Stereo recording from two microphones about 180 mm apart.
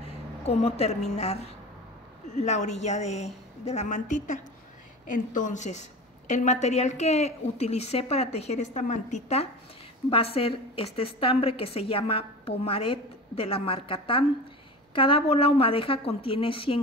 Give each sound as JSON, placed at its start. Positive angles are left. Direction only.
{"t": 0.5, "sound": "a woman's voice", "side_deg": 35}